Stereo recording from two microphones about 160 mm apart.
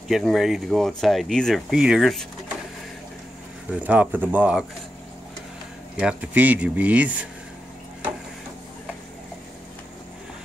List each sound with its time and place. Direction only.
0.1 s speech: centre (ahead or behind)
3.7 s speech: 10° right (ahead or behind)
5.9 s speech: 10° right (ahead or behind)